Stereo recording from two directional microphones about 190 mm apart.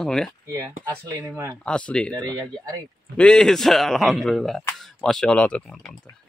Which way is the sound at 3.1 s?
5° left (ahead or behind).